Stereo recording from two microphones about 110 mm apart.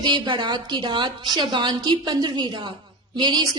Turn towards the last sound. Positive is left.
turn(degrees=-45)  # may be behind; listen again after turning